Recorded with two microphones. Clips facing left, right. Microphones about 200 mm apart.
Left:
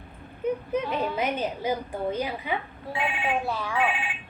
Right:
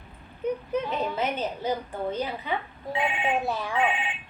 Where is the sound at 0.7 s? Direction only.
10° left (ahead or behind).